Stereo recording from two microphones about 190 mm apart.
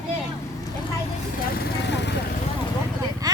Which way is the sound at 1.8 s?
65° left (ahead or behind).